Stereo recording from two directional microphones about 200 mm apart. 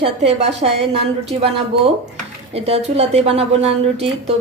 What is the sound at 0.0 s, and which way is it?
Speech, 30° right (ahead or behind).